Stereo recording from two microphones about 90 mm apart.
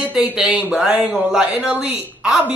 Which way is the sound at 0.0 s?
15° right (ahead or behind).